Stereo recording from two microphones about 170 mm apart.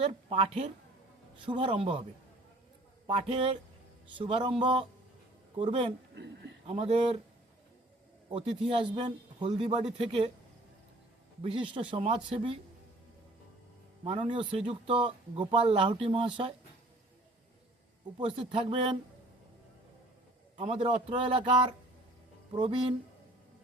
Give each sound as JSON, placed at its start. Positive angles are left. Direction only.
{"t": 0.1, "sound": "speech", "side_deg": -30}
{"t": 3.1, "sound": "speech", "side_deg": -35}
{"t": 6.1, "sound": "speech", "side_deg": -90}
{"t": 6.7, "sound": "speech", "side_deg": -35}
{"t": 8.3, "sound": "a man's voice", "side_deg": -30}
{"t": 11.4, "sound": "speech", "side_deg": -30}
{"t": 14.0, "sound": "speech", "side_deg": -35}
{"t": 18.2, "sound": "speech", "side_deg": -30}
{"t": 20.6, "sound": "speech", "side_deg": -30}